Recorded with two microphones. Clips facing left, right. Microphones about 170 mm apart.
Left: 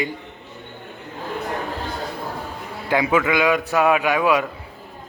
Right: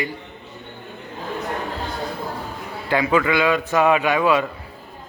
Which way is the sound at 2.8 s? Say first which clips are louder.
Even; 10° left (ahead or behind).